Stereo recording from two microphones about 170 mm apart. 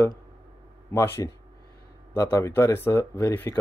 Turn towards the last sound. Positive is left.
turn(degrees=15)  # may be behind; listen again after turning